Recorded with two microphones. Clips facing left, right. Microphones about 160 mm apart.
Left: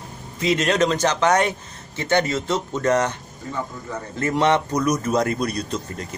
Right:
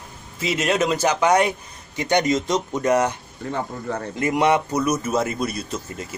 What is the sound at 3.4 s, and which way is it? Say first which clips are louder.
Speech: right 4 dB; 65° right (ahead or behind).